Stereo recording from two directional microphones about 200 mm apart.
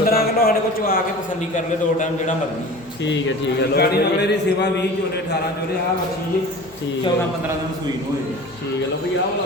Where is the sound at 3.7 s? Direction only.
55° left (ahead or behind).